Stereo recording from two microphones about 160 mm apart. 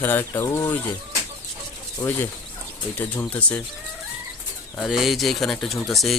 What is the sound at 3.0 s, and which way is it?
Speech, 10° left (ahead or behind).